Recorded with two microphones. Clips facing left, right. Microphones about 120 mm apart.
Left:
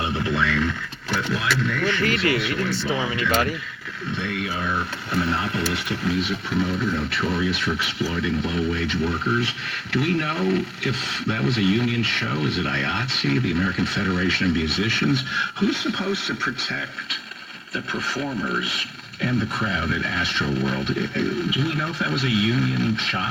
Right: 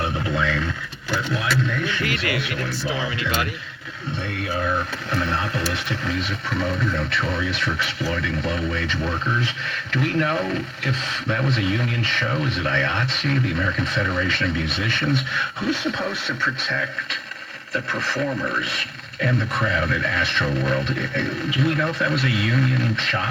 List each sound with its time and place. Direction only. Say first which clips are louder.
2.0 s speech: left 3 dB; 30° left (ahead or behind)
10.0 s speech: right 1 dB; 45° right (ahead or behind)
19.2 s speech: right 1 dB; 55° right (ahead or behind)